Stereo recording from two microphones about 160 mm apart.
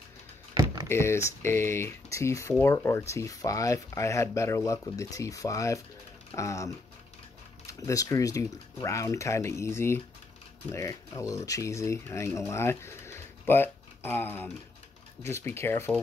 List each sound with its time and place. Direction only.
0.8 s speech: 15° left (ahead or behind)